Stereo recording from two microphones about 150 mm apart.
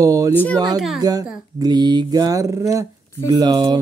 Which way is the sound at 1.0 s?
25° right (ahead or behind).